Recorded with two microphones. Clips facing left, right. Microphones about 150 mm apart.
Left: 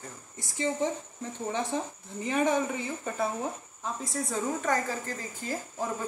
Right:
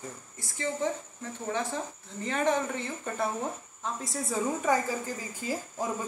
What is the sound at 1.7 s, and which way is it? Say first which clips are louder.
A woman's voice: left 3 dB; 15° left (ahead or behind).